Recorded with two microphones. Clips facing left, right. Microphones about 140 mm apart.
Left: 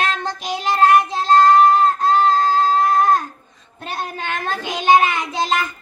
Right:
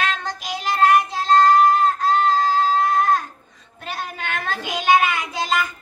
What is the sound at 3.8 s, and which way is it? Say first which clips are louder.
Child singing: left 3 dB; 30° left (ahead or behind).